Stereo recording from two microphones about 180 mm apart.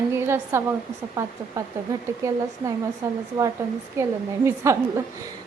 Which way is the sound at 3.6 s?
15° right (ahead or behind).